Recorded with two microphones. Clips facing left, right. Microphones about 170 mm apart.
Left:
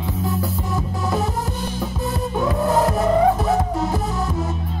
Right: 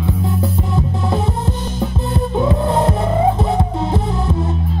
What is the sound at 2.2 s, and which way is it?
Music, 25° right (ahead or behind).